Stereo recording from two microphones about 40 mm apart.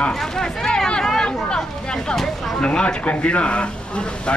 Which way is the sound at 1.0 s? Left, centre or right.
Centre.